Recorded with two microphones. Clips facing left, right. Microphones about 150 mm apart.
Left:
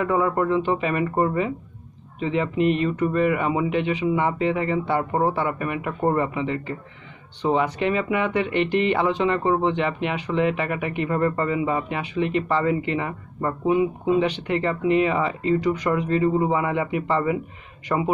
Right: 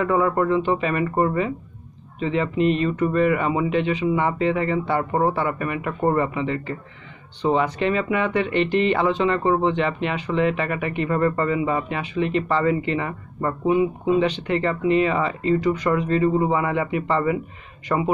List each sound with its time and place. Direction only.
0.0 s speech: 15° left (ahead or behind)
2.1 s speech: 15° left (ahead or behind)